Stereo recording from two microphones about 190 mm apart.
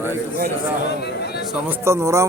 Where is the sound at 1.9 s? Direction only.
15° right (ahead or behind).